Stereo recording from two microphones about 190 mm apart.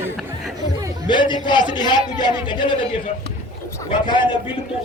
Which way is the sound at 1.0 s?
25° left (ahead or behind).